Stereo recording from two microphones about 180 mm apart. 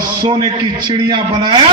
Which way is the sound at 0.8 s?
25° right (ahead or behind).